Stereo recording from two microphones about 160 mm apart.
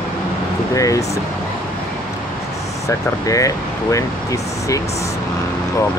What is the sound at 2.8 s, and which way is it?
Speech, 20° left (ahead or behind).